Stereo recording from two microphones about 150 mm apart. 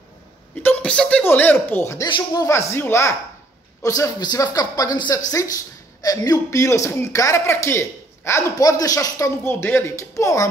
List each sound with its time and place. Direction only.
0.6 s speech: 10° left (ahead or behind)
2.0 s speech: 30° left (ahead or behind)
2.4 s a man's voice: 15° left (ahead or behind)